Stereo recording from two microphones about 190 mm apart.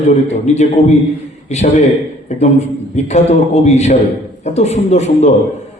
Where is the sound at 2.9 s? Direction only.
35° left (ahead or behind).